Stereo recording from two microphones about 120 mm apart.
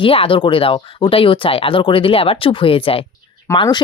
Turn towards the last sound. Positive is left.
turn(degrees=45)  # may be behind; listen again after turning